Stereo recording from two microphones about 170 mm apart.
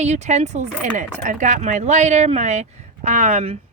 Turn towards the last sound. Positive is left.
turn(degrees=-40)  # may be behind; listen again after turning